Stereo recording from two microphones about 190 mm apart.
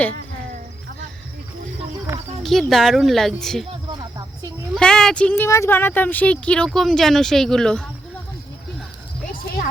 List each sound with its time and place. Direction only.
2.4 s speech: centre (ahead or behind)
3.9 s a sound: 15° right (ahead or behind)
4.7 s speech: 5° left (ahead or behind)